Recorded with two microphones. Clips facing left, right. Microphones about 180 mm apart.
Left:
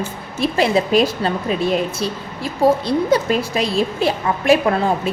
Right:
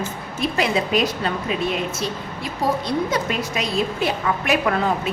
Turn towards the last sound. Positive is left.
turn(degrees=30)  # may be behind; listen again after turning